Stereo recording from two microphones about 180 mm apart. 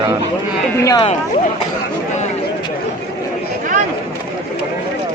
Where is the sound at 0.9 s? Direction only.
25° left (ahead or behind).